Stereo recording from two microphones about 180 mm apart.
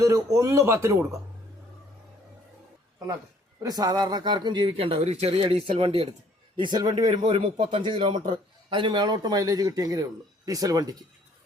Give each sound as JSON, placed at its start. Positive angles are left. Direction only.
{"t": 0.0, "sound": "speech", "side_deg": -15}
{"t": 3.6, "sound": "speech", "side_deg": -20}
{"t": 7.1, "sound": "speech", "side_deg": -35}